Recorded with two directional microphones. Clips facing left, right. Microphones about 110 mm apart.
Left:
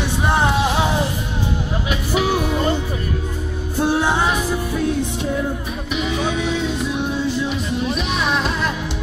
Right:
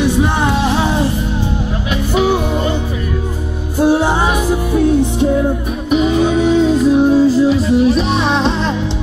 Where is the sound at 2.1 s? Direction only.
25° right (ahead or behind).